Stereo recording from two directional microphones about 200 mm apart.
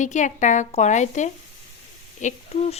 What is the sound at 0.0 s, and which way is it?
Speech, 35° left (ahead or behind).